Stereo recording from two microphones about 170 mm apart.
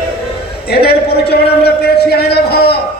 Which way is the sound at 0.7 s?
65° left (ahead or behind).